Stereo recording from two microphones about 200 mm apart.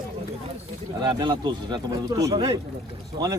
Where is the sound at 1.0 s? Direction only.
25° right (ahead or behind).